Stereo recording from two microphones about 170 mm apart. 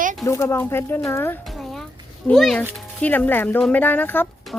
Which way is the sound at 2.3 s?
Centre (ahead or behind).